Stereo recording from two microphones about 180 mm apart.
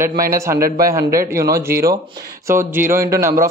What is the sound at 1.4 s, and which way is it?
A man's voice, 15° right (ahead or behind).